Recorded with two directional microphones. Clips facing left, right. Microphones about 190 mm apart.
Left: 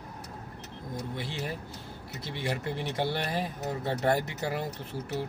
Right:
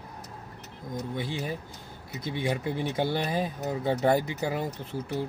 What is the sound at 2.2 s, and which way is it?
Speech, centre (ahead or behind).